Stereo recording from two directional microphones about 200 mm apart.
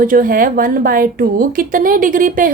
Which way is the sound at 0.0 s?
45° right (ahead or behind).